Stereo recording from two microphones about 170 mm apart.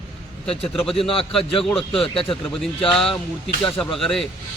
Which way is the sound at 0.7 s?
Centre (ahead or behind).